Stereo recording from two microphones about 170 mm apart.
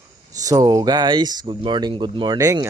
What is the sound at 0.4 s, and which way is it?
A man's voice, 20° right (ahead or behind).